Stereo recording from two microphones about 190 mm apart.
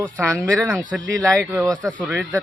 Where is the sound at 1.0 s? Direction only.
20° right (ahead or behind).